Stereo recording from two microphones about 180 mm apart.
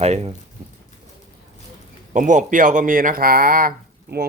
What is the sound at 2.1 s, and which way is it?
Speech, 45° right (ahead or behind).